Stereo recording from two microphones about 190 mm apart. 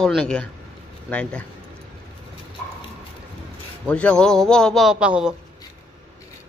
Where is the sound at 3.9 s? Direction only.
5° left (ahead or behind).